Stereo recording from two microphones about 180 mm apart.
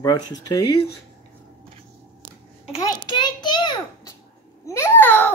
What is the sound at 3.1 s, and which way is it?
Speech, 25° left (ahead or behind).